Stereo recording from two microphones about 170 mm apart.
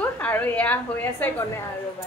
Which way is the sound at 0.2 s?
10° left (ahead or behind).